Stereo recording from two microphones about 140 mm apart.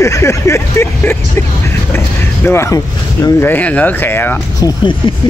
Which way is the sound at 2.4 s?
20° left (ahead or behind).